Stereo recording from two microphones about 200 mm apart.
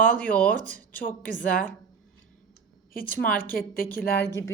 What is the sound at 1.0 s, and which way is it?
Speech, 45° left (ahead or behind).